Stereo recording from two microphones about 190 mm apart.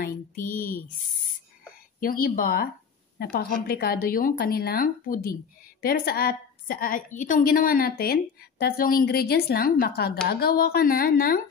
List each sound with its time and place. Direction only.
0.0 s speech: 45° left (ahead or behind)
2.0 s a woman's voice: 50° left (ahead or behind)